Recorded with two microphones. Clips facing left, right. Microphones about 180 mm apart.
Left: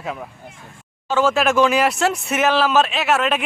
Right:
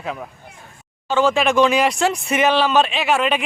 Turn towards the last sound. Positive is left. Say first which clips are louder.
# even
turn(degrees=0)  # may be behind; listen again after turning